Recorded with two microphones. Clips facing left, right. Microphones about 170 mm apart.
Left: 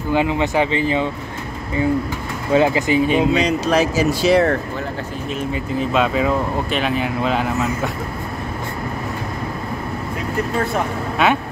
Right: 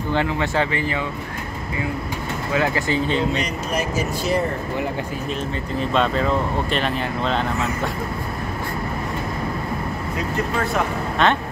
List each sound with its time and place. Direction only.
0.1 s speech: 15° left (ahead or behind)
2.5 s speech: 20° left (ahead or behind)
3.3 s speech: 90° left
5.8 s speech: 5° left (ahead or behind)
11.2 s speech: 5° left (ahead or behind)